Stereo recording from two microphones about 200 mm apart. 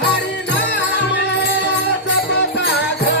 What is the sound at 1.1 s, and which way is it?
Music, 60° left (ahead or behind).